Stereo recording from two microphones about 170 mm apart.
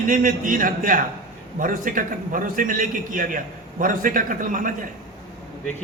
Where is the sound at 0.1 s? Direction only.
55° right (ahead or behind).